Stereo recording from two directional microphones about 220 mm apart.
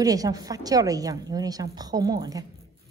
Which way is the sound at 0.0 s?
15° right (ahead or behind).